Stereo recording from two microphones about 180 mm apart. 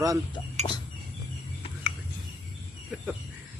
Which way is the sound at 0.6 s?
25° left (ahead or behind).